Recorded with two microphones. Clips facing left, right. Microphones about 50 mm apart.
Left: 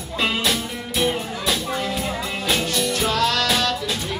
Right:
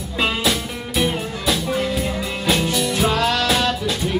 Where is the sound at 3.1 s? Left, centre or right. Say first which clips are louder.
Right 1 dB; centre.